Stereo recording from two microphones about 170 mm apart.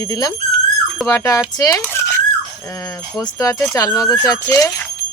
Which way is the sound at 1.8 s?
15° left (ahead or behind).